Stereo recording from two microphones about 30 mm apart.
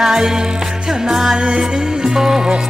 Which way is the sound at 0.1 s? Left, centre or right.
Centre.